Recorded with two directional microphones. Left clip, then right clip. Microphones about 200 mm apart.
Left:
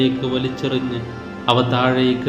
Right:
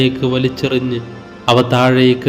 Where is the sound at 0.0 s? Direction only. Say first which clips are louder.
Right 4 dB; 30° right (ahead or behind).